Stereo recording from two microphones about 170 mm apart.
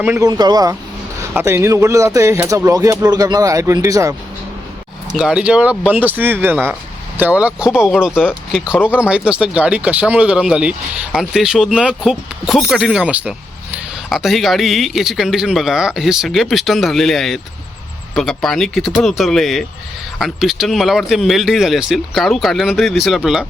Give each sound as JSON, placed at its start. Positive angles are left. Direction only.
{"t": 0.0, "sound": "speech", "side_deg": -10}
{"t": 0.3, "sound": "speech", "side_deg": -25}
{"t": 5.1, "sound": "speech", "side_deg": -5}